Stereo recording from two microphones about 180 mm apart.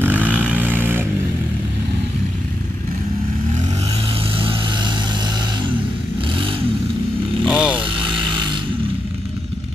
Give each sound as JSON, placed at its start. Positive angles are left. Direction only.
{"t": 0.0, "sound": "vehicle", "side_deg": -10}
{"t": 4.4, "sound": "vehicle", "side_deg": -25}
{"t": 7.4, "sound": "vehicle", "side_deg": -5}
{"t": 7.8, "sound": "vehicle", "side_deg": -25}